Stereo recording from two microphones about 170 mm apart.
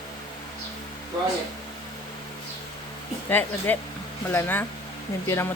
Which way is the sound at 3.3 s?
10° left (ahead or behind).